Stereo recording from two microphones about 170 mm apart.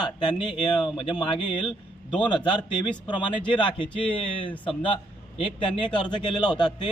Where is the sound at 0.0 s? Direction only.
25° left (ahead or behind).